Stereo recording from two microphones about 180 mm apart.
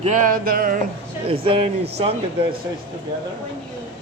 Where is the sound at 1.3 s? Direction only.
30° right (ahead or behind).